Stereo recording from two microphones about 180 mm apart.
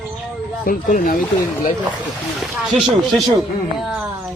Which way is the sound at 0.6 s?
50° left (ahead or behind).